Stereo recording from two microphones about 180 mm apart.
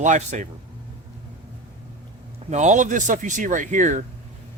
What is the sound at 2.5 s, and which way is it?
Speech, 40° right (ahead or behind).